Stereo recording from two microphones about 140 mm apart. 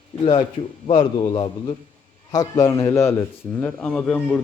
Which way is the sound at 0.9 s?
35° left (ahead or behind).